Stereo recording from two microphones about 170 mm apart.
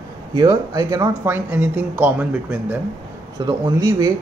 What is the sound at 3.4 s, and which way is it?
Speech, 20° right (ahead or behind).